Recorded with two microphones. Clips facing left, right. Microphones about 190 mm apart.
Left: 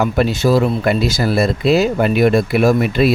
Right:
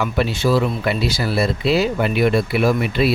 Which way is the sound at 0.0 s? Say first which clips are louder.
Left 4 dB; 40° left (ahead or behind).